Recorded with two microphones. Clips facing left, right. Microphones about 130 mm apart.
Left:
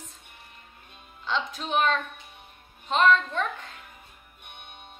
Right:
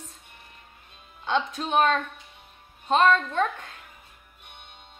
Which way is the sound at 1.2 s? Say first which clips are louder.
Right 4 dB; 50° right (ahead or behind).